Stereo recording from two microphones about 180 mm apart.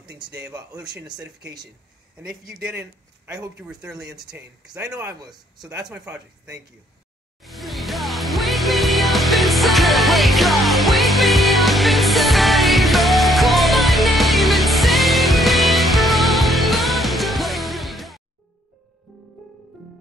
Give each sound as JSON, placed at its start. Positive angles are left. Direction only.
{"t": 3.3, "sound": "speech", "side_deg": -5}
{"t": 5.2, "sound": "speech", "side_deg": -20}
{"t": 7.4, "sound": "music", "side_deg": 0}